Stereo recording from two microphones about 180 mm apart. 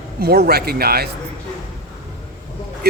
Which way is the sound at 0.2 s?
60° right (ahead or behind).